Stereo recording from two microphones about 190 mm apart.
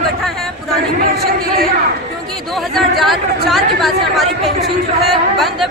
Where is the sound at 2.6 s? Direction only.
Centre (ahead or behind).